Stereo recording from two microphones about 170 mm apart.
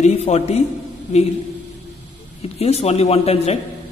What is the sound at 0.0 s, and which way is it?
Speech, 40° left (ahead or behind).